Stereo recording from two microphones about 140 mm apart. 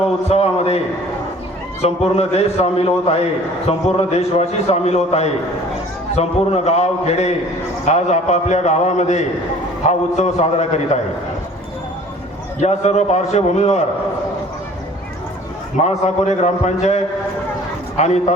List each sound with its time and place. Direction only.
0.3 s a sound: 45° left (ahead or behind)
1.8 s a man's voice: 50° left (ahead or behind)
12.5 s a man's voice: 55° left (ahead or behind)
15.8 s a man's voice: 55° left (ahead or behind)